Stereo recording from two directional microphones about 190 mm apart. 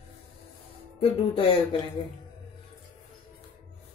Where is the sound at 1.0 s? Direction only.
30° left (ahead or behind).